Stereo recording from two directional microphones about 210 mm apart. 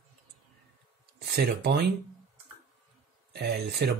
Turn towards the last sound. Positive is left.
turn(degrees=-50)  # may be behind; listen again after turning